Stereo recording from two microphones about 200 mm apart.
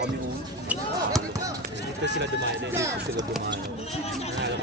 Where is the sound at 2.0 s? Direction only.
60° right (ahead or behind).